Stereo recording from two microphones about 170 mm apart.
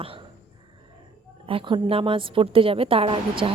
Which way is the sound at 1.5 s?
30° right (ahead or behind).